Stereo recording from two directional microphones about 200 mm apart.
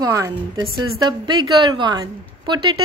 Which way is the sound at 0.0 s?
15° right (ahead or behind).